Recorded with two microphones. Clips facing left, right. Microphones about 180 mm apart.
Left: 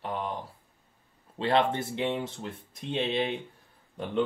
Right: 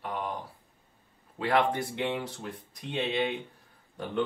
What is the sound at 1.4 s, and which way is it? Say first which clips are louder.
Speech: left 1 dB; 25° left (ahead or behind).